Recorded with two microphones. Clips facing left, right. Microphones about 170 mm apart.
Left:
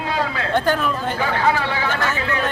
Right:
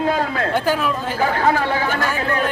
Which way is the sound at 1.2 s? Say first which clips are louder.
Right 3 dB; 45° right (ahead or behind).